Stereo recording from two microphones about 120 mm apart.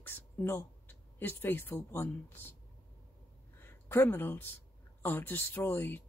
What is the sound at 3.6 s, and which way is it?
A woman's voice, 20° left (ahead or behind).